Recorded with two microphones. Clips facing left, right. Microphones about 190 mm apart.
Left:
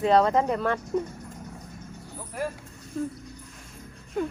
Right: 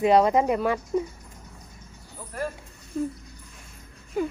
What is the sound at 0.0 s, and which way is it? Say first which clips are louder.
Speech: right 2 dB; 15° right (ahead or behind).